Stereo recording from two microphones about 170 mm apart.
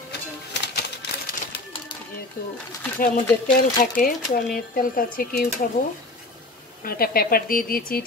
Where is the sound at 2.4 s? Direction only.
60° left (ahead or behind).